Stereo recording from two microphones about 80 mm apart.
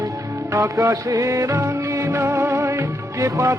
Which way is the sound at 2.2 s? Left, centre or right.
Right.